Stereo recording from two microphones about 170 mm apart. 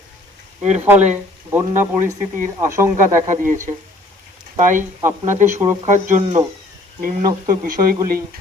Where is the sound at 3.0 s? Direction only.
45° right (ahead or behind).